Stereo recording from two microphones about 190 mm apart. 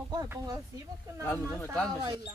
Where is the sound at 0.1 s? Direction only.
20° right (ahead or behind).